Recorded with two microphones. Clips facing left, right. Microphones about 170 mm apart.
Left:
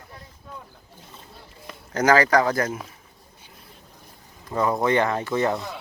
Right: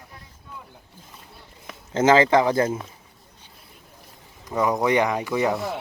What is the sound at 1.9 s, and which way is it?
Speech, 25° right (ahead or behind).